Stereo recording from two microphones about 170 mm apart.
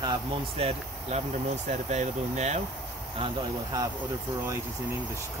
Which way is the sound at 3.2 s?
20° right (ahead or behind).